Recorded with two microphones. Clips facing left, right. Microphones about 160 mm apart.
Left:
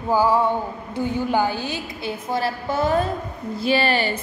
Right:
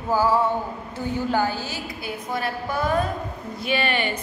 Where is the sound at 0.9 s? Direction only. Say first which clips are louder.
Left 3 dB; 15° left (ahead or behind).